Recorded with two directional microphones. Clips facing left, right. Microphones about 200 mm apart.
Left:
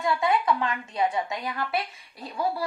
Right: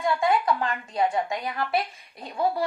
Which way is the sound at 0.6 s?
45° right (ahead or behind).